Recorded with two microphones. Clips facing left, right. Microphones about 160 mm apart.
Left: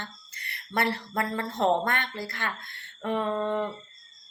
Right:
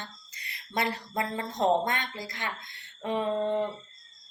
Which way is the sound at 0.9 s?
15° right (ahead or behind).